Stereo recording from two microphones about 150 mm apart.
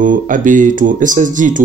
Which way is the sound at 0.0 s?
60° right (ahead or behind).